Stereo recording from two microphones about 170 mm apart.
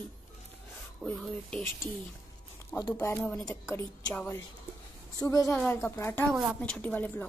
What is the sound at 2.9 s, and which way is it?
Speech, 15° left (ahead or behind).